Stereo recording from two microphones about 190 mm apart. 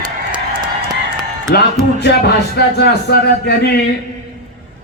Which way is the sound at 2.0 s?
60° left (ahead or behind).